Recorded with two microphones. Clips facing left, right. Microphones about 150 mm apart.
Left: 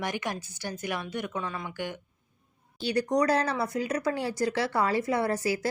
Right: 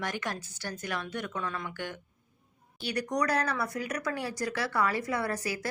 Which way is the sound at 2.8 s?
25° left (ahead or behind).